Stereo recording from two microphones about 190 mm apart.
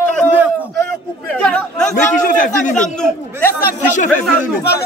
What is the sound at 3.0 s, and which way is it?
Speech, 10° left (ahead or behind).